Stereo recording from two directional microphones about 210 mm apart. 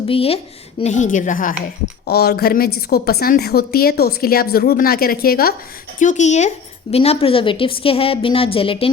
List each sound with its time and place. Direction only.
0.1 s a woman's voice: 25° left (ahead or behind)